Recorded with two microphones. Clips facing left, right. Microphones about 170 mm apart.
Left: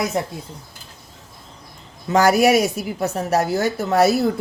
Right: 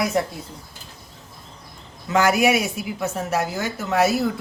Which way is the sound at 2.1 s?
35° left (ahead or behind).